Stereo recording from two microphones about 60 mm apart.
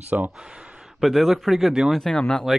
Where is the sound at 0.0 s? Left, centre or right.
Right.